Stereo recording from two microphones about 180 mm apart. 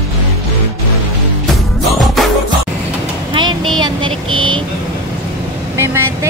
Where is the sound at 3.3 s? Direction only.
25° right (ahead or behind).